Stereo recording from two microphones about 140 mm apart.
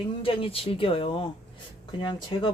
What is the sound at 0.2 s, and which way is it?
Speech, 40° left (ahead or behind).